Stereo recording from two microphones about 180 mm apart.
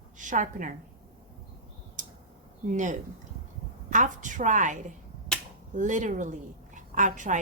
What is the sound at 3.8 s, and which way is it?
A woman's voice, 45° right (ahead or behind).